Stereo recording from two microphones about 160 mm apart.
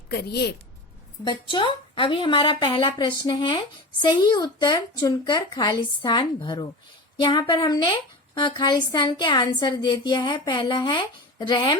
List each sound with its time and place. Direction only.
0.1 s speech: 90° left
1.2 s a woman's voice: 30° left (ahead or behind)